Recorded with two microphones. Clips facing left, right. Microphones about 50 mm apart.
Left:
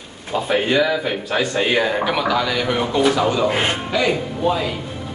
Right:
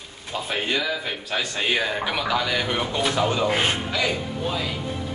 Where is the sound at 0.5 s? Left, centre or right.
Centre.